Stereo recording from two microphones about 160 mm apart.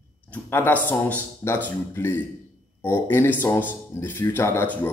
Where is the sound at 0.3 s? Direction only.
10° left (ahead or behind).